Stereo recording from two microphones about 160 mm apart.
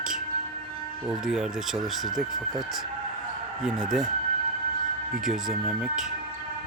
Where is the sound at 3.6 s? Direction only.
Centre (ahead or behind).